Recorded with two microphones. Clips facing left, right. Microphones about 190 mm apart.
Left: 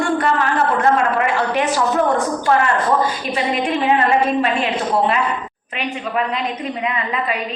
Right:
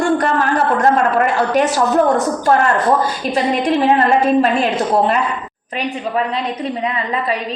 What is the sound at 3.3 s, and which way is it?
A woman's voice, 40° right (ahead or behind).